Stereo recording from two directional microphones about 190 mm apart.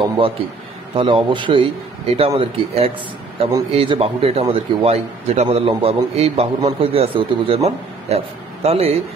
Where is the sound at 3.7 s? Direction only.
30° right (ahead or behind).